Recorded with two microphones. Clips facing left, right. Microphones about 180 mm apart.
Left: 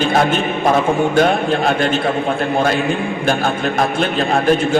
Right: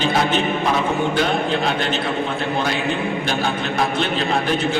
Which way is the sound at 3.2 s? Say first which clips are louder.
Left 5 dB; 50° left (ahead or behind).